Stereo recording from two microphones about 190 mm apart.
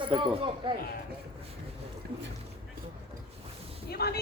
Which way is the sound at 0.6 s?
25° right (ahead or behind).